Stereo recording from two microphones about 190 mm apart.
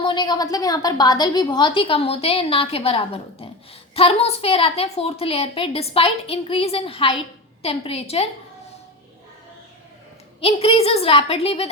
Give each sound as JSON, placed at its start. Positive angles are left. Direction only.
{"t": 0.0, "sound": "a woman's voice", "side_deg": 20}
{"t": 10.4, "sound": "a woman's voice", "side_deg": 30}